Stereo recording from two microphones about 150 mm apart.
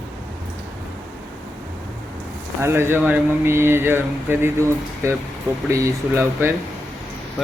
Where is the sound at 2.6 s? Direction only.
15° right (ahead or behind).